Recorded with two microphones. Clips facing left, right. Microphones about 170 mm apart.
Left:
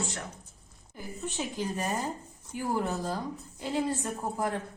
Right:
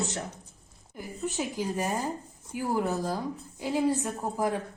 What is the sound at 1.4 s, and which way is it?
A woman's voice, 15° right (ahead or behind).